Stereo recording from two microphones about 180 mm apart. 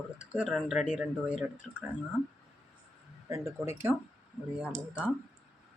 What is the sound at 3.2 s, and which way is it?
Speech, 15° right (ahead or behind).